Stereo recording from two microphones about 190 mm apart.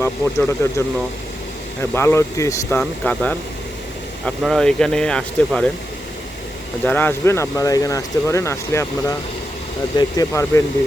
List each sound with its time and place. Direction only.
0.0 s speech: 15° left (ahead or behind)
6.8 s speech: 10° left (ahead or behind)